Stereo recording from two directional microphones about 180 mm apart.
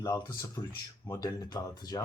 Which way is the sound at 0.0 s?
20° left (ahead or behind).